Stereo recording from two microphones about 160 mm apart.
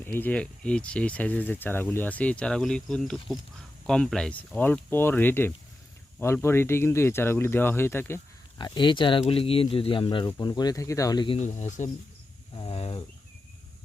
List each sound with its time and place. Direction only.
0.0 s speech: 10° left (ahead or behind)
8.5 s speech: 30° left (ahead or behind)
11.3 s speech: 45° left (ahead or behind)
12.5 s a sound: 40° left (ahead or behind)